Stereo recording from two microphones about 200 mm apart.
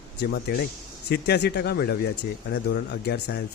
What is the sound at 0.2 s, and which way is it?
Speech, 55° left (ahead or behind).